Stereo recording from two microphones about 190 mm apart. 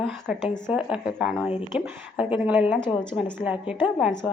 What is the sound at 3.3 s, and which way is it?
Speech, 5° right (ahead or behind).